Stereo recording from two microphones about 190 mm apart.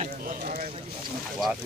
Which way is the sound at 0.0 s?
40° right (ahead or behind).